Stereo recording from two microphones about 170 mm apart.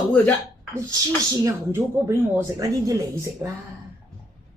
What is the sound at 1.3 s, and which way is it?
A woman's voice, 20° right (ahead or behind).